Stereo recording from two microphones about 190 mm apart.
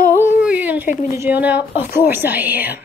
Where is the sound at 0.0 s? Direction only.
10° right (ahead or behind).